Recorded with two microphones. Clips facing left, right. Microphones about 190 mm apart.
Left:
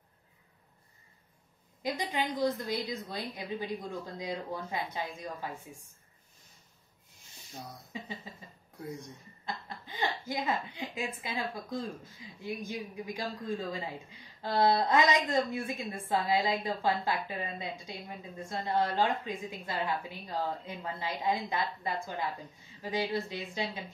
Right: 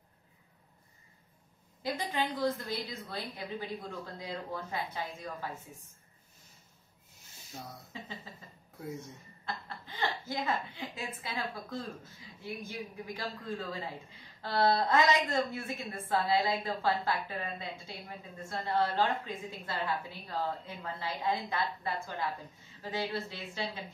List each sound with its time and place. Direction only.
1.8 s a woman's voice: 15° left (ahead or behind)
8.7 s speech: 5° right (ahead or behind)
9.8 s a woman's voice: 15° left (ahead or behind)